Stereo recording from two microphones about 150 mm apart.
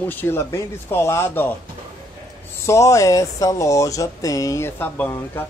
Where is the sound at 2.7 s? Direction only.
20° left (ahead or behind).